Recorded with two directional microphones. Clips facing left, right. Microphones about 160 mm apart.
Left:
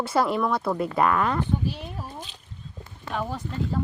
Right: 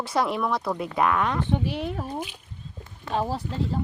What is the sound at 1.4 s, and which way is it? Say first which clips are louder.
Speech: right 2 dB; 75° right (ahead or behind).